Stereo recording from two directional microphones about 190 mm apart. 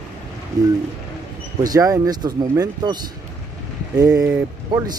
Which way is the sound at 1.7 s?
20° right (ahead or behind).